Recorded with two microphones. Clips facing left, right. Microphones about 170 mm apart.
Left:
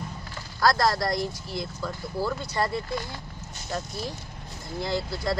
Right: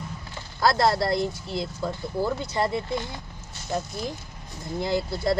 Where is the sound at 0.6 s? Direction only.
25° right (ahead or behind).